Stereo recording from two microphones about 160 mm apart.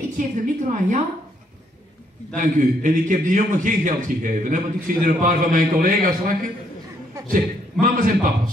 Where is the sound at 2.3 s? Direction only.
55° right (ahead or behind).